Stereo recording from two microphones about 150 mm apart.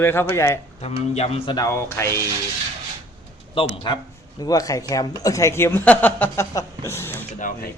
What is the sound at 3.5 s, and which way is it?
Speech, 35° left (ahead or behind).